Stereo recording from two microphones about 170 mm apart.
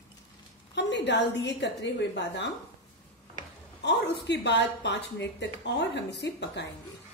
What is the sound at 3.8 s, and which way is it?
A woman's voice, 90° left.